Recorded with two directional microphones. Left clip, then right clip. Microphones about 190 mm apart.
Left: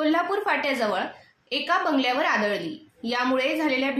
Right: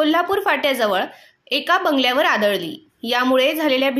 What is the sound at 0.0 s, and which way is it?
A woman's voice, 45° right (ahead or behind).